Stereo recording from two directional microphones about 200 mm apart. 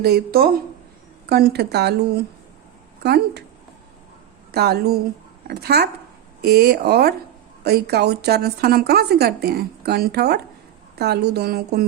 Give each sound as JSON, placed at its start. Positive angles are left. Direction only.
{"t": 0.0, "sound": "a woman's voice", "side_deg": -50}
{"t": 3.0, "sound": "speech", "side_deg": -55}
{"t": 4.5, "sound": "a woman's voice", "side_deg": -55}